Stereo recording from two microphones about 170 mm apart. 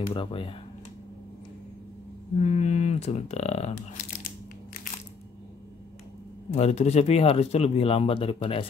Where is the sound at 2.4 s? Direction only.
40° left (ahead or behind).